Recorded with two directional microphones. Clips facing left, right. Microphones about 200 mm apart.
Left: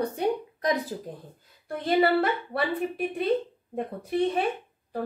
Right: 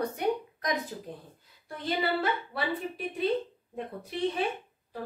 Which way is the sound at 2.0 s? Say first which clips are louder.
Left 7 dB; 60° left (ahead or behind).